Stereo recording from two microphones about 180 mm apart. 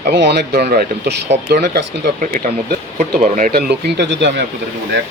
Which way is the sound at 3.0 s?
45° right (ahead or behind).